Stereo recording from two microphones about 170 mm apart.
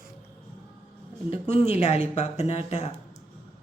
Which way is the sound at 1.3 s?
35° left (ahead or behind).